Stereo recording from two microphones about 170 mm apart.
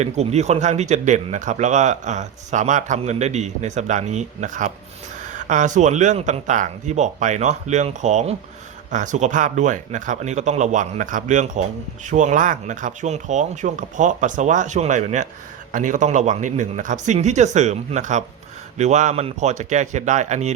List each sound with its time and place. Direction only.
0.0 s speech: 40° right (ahead or behind)